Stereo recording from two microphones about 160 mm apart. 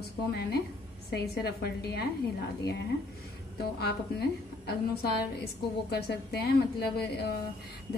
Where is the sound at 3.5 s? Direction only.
90° left.